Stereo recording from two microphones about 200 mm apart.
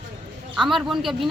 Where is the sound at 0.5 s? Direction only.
Centre (ahead or behind).